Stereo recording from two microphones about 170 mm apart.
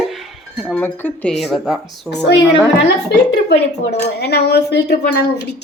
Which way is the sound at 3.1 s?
90° left.